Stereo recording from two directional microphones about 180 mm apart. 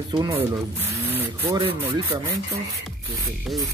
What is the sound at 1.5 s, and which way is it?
Speech, 30° right (ahead or behind).